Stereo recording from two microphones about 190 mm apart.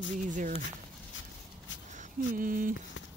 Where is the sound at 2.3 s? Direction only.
45° right (ahead or behind).